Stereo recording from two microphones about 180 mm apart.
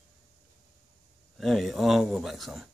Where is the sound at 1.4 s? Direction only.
Centre (ahead or behind).